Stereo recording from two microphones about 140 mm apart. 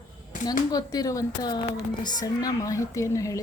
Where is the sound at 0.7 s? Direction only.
25° left (ahead or behind).